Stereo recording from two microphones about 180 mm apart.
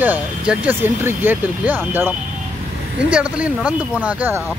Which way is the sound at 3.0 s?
5° right (ahead or behind).